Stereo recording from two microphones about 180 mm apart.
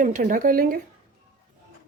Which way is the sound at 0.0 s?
50° right (ahead or behind).